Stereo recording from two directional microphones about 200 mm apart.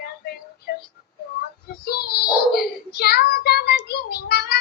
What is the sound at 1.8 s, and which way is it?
Child singing, 50° left (ahead or behind).